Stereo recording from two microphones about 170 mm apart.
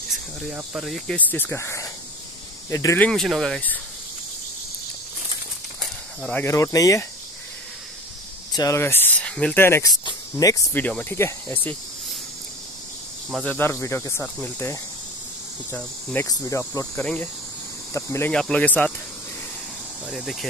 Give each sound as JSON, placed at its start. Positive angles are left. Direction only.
{"t": 0.5, "sound": "speech", "side_deg": -5}
{"t": 0.9, "sound": "speech", "side_deg": 5}
{"t": 3.0, "sound": "speech", "side_deg": 0}
{"t": 6.2, "sound": "speech", "side_deg": 10}
{"t": 8.5, "sound": "speech", "side_deg": 20}
{"t": 13.3, "sound": "speech", "side_deg": 5}
{"t": 17.0, "sound": "speech", "side_deg": 5}
{"t": 17.9, "sound": "speech", "side_deg": 15}
{"t": 20.1, "sound": "speech", "side_deg": -5}